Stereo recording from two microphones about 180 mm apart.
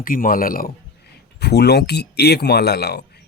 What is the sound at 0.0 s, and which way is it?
Speech, 50° left (ahead or behind).